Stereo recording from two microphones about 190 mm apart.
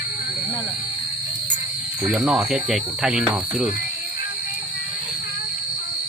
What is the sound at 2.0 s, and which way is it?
Speech, 5° right (ahead or behind).